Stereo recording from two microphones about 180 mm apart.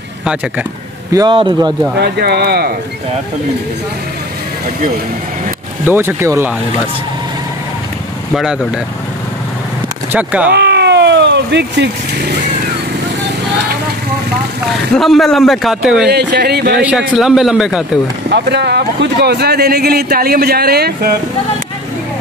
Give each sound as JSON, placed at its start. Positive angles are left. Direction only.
{"t": 0.2, "sound": "a man's voice", "side_deg": -5}
{"t": 1.1, "sound": "speech", "side_deg": -25}
{"t": 2.0, "sound": "speech", "side_deg": -65}
{"t": 5.9, "sound": "speech", "side_deg": -10}
{"t": 8.4, "sound": "a man's voice", "side_deg": -5}
{"t": 10.1, "sound": "speech", "side_deg": -10}
{"t": 10.5, "sound": "vehicle", "side_deg": -70}
{"t": 15.0, "sound": "a man's voice", "side_deg": 0}
{"t": 16.1, "sound": "speech", "side_deg": -65}
{"t": 17.2, "sound": "a man's voice", "side_deg": 0}
{"t": 18.3, "sound": "speech", "side_deg": -70}